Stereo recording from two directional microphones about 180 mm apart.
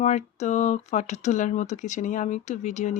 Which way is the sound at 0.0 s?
40° left (ahead or behind).